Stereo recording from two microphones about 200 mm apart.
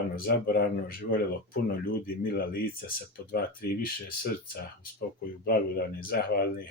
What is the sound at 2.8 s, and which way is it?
Speech, 50° left (ahead or behind).